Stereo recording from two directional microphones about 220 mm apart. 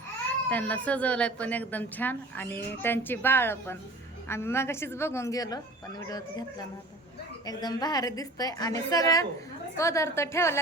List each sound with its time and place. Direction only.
0.4 s a woman's voice: 5° left (ahead or behind)